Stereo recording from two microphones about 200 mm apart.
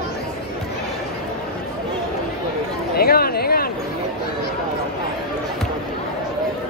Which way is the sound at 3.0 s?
50° left (ahead or behind).